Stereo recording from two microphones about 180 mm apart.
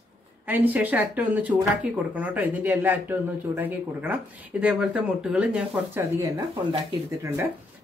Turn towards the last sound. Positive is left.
turn(degrees=-15)  # may be behind; listen again after turning